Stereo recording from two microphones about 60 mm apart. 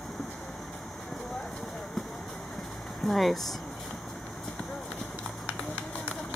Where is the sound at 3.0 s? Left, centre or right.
Centre.